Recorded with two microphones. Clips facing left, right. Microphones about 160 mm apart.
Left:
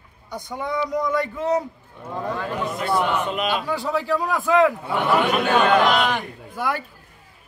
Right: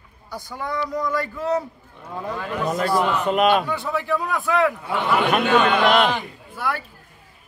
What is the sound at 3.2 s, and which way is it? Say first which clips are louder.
Speech: right 6 dB; 45° right (ahead or behind).